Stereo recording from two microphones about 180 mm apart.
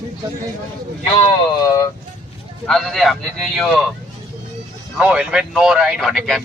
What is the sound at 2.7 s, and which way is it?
Speech, centre (ahead or behind).